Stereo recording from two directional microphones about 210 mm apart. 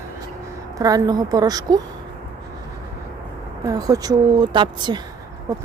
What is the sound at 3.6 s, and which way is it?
Speech, 15° right (ahead or behind).